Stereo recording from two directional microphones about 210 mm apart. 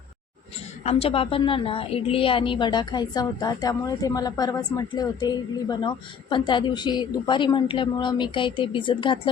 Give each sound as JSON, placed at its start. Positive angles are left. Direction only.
{"t": 0.9, "sound": "a woman's voice", "side_deg": 30}